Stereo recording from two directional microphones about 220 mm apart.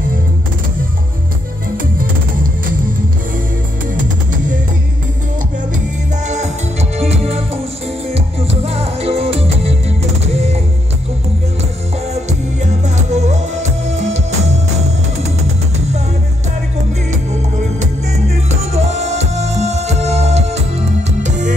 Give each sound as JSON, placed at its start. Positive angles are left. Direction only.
{"t": 3.9, "sound": "music", "side_deg": -35}
{"t": 6.2, "sound": "music", "side_deg": -30}
{"t": 12.1, "sound": "music", "side_deg": -30}
{"t": 18.3, "sound": "music", "side_deg": -30}